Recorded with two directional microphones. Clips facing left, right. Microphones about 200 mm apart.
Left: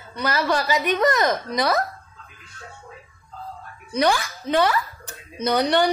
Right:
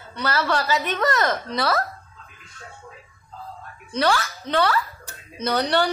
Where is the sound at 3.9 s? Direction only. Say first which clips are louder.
Left 1 dB; 15° left (ahead or behind).